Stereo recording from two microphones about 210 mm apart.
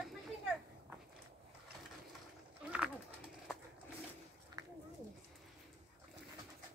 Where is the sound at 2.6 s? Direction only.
5° right (ahead or behind).